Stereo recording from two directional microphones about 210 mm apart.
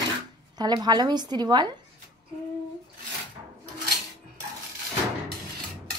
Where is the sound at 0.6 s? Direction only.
20° right (ahead or behind).